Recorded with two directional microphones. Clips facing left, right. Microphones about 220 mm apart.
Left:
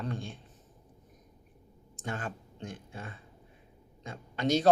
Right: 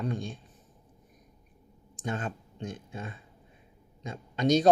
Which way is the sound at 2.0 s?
20° right (ahead or behind).